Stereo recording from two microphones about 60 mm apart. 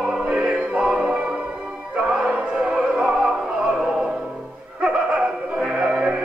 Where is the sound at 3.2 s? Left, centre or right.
Centre.